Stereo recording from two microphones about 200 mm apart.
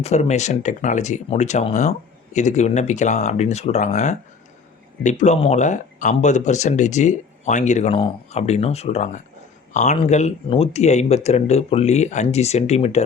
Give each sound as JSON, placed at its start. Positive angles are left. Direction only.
{"t": 0.0, "sound": "speech", "side_deg": 35}